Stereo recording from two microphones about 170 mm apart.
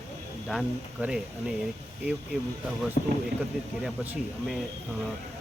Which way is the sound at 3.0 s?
45° left (ahead or behind).